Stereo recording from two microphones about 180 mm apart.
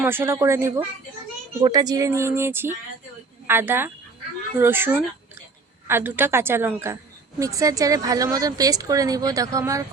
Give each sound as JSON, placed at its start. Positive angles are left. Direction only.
{"t": 0.0, "sound": "a woman's voice", "side_deg": -10}